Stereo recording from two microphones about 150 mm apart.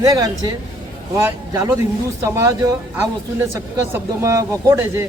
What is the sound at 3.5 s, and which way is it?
Speech, 20° right (ahead or behind).